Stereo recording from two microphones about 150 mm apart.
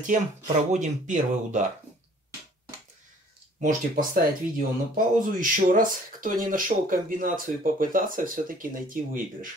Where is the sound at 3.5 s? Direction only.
60° right (ahead or behind).